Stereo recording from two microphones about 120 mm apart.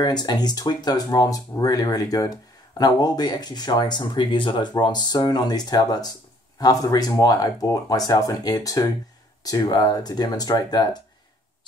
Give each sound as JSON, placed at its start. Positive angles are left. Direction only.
{"t": 0.0, "sound": "speech", "side_deg": 35}